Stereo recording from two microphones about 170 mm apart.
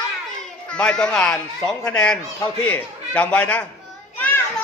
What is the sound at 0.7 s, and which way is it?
A man's voice, 5° left (ahead or behind).